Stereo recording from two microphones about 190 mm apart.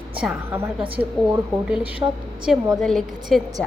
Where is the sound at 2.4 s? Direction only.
Centre (ahead or behind).